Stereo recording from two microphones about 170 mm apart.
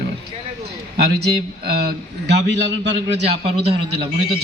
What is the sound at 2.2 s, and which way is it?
Speech, 90° right.